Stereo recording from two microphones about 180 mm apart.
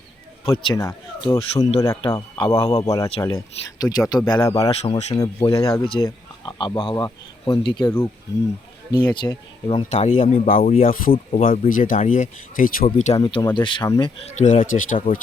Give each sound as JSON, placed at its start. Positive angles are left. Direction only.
{"t": 0.4, "sound": "speech", "side_deg": 30}
{"t": 0.8, "sound": "speech", "side_deg": 20}
{"t": 1.4, "sound": "speech", "side_deg": 30}
{"t": 1.8, "sound": "speech", "side_deg": 20}
{"t": 4.7, "sound": "speech", "side_deg": 35}
{"t": 5.1, "sound": "speech", "side_deg": 25}
{"t": 7.9, "sound": "speech", "side_deg": 15}
{"t": 9.9, "sound": "speech", "side_deg": 40}
{"t": 13.1, "sound": "speech", "side_deg": 25}
{"t": 14.3, "sound": "speech", "side_deg": 40}
{"t": 15.1, "sound": "speech", "side_deg": 30}